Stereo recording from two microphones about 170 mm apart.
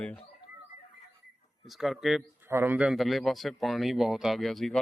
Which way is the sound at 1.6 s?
Centre (ahead or behind).